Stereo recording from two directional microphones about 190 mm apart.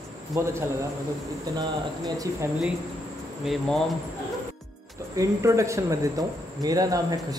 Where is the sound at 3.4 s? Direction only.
Centre (ahead or behind).